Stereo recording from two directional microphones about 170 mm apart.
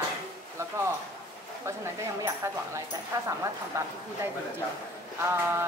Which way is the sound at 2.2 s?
15° right (ahead or behind).